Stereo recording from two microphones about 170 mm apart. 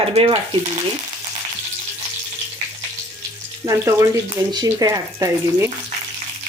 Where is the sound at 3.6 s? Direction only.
20° right (ahead or behind).